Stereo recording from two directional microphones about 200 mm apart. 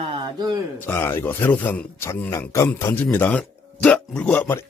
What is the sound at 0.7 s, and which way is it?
A man's voice, 10° left (ahead or behind).